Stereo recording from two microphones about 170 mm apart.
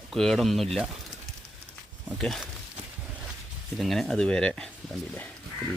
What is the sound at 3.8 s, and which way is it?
Speech, centre (ahead or behind).